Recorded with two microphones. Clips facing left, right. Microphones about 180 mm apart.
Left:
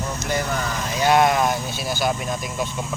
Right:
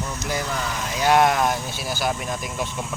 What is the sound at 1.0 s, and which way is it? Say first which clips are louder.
Speech: left 1 dB; 5° right (ahead or behind).